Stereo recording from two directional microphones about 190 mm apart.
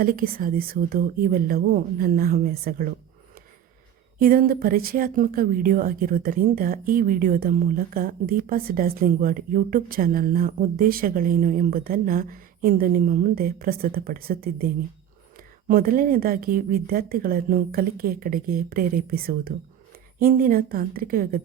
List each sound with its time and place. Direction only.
0.0 s a woman's voice: 50° right (ahead or behind)
4.2 s a woman's voice: 50° right (ahead or behind)